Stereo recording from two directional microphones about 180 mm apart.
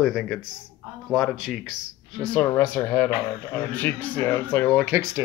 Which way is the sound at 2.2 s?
10° left (ahead or behind).